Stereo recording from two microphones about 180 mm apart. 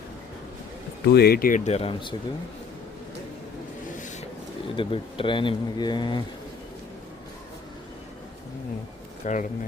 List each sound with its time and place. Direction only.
1.0 s speech: 60° left (ahead or behind); by 2.1 s 30° left (ahead or behind)
4.8 s speech: 30° left (ahead or behind)
9.2 s speech: 45° left (ahead or behind)